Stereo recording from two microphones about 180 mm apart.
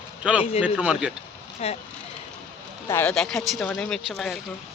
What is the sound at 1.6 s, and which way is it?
Speech, 35° left (ahead or behind).